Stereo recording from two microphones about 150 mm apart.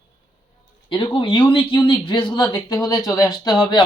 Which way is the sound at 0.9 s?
30° left (ahead or behind).